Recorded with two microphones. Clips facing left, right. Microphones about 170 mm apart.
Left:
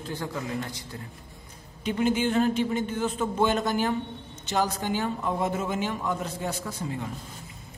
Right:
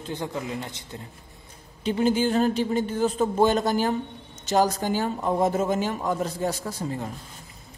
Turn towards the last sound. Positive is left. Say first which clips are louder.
# right 2 dB
turn(degrees=-35)  # may be behind; listen again after turning